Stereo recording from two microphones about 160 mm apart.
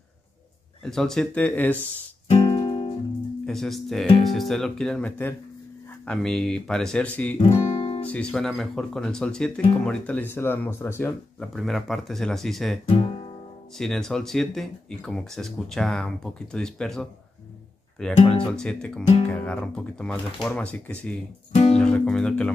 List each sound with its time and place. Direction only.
0.8 s speech: 5° left (ahead or behind)
2.2 s music: 40° left (ahead or behind)
3.4 s speech: centre (ahead or behind)
7.3 s guitar: 40° left (ahead or behind)
8.0 s speech: 5° left (ahead or behind)
11.5 s speech: centre (ahead or behind)
12.8 s guitar: 35° left (ahead or behind)
13.7 s speech: 5° left (ahead or behind)